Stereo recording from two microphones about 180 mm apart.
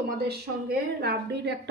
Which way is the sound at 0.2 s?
60° right (ahead or behind).